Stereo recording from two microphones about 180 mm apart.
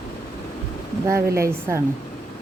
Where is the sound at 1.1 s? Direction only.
15° right (ahead or behind).